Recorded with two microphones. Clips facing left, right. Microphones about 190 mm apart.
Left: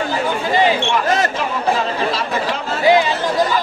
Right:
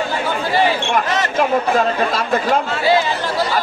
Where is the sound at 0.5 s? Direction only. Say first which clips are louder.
Left 1 dB; 20° left (ahead or behind).